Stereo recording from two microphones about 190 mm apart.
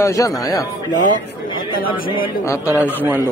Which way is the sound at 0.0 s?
15° left (ahead or behind).